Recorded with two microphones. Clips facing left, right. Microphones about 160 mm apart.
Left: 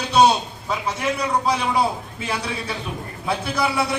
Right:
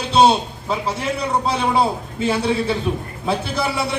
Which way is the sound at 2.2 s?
25° right (ahead or behind).